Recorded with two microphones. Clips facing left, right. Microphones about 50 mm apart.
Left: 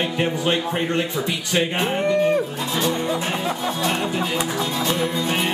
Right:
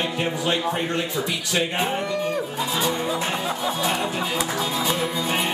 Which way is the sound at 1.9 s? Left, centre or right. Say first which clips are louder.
Left 6 dB; left.